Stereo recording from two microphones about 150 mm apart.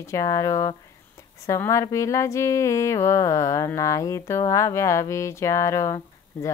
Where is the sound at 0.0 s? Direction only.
20° left (ahead or behind).